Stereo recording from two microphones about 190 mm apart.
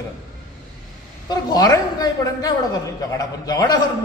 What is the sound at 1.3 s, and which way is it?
A man's voice, 20° left (ahead or behind).